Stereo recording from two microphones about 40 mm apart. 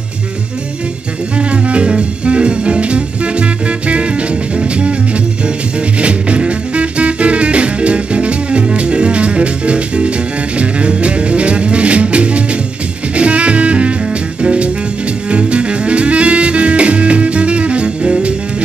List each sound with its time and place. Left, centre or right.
1.4 s music: right
5.9 s music: right